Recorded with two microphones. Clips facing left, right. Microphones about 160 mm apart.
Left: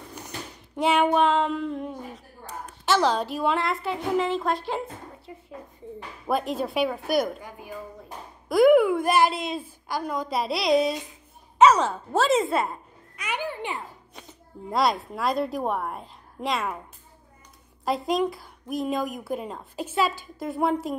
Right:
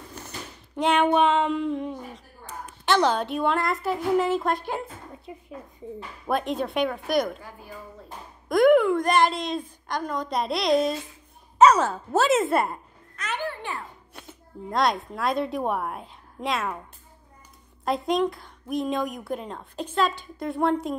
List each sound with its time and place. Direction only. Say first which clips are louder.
0.7 s a woman's voice: even; 5° left (ahead or behind)
5.3 s speech: right 4 dB; 20° right (ahead or behind)
6.2 s a woman's voice: even; centre (ahead or behind)
7.4 s speech: left 2 dB; 15° left (ahead or behind)
8.5 s a woman's voice: left 1 dB; 5° left (ahead or behind)
13.1 s a sound: even; 10° left (ahead or behind)
14.7 s a woman's voice: even; centre (ahead or behind)
17.8 s a woman's voice: right 1 dB; centre (ahead or behind)